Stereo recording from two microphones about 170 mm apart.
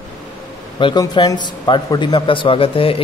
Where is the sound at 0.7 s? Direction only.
30° left (ahead or behind).